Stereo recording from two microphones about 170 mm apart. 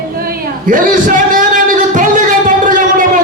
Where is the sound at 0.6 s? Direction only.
55° right (ahead or behind).